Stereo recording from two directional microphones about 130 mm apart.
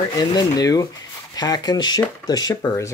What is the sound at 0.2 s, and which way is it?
Speech, 30° left (ahead or behind).